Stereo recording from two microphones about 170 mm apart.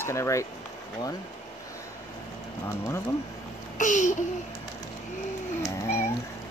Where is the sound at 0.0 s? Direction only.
15° left (ahead or behind).